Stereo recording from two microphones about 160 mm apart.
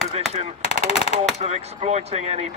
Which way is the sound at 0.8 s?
40° left (ahead or behind).